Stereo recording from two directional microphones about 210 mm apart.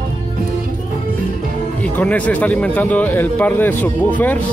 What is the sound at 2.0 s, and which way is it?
Speech, 5° left (ahead or behind).